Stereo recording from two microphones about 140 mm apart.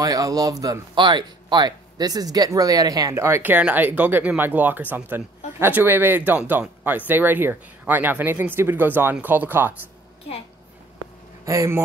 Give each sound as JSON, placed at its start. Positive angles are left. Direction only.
{"t": 0.0, "sound": "speech", "side_deg": -25}
{"t": 11.4, "sound": "speech", "side_deg": -25}